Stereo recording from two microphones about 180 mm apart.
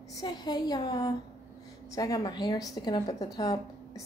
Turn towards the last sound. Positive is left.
turn(degrees=20)  # may be behind; listen again after turning